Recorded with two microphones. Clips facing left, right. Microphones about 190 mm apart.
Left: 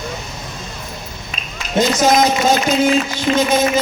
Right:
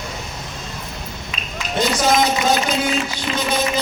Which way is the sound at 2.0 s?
45° left (ahead or behind).